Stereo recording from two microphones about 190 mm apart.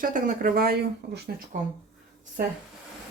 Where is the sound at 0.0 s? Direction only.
45° right (ahead or behind).